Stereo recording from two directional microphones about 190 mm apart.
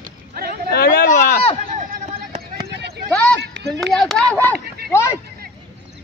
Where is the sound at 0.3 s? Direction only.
55° right (ahead or behind).